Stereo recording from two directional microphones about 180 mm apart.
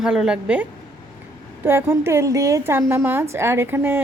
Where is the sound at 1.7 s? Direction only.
10° right (ahead or behind).